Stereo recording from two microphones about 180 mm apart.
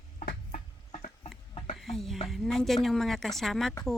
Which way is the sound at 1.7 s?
Centre (ahead or behind).